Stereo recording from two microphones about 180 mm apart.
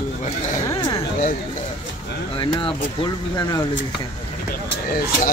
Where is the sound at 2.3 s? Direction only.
30° left (ahead or behind).